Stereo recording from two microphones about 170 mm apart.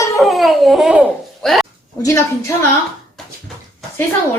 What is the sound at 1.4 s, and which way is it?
Speech, centre (ahead or behind).